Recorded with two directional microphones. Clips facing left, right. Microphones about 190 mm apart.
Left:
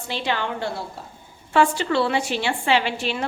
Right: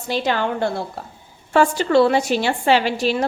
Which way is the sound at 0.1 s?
40° right (ahead or behind).